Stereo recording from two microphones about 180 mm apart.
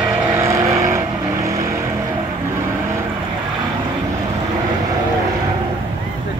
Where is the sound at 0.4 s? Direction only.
15° right (ahead or behind).